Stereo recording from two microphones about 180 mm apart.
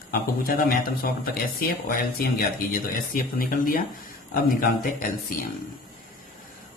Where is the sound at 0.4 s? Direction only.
55° left (ahead or behind).